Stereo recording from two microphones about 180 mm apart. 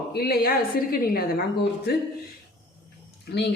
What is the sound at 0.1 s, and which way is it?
Speech, 60° left (ahead or behind).